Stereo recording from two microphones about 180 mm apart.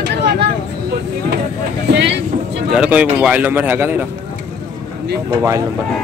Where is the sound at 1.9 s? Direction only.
70° right (ahead or behind).